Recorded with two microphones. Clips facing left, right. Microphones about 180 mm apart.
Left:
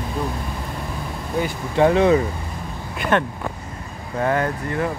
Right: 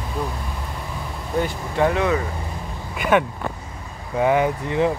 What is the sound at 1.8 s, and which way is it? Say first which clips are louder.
Speech: left 4 dB; 30° left (ahead or behind).